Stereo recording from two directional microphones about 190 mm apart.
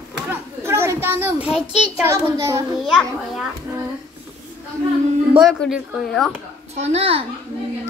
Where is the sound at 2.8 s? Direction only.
Centre (ahead or behind).